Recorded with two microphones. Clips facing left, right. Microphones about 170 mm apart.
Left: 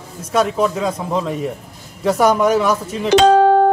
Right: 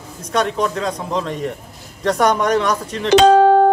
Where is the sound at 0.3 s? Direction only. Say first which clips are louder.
Left 2 dB; 5° left (ahead or behind).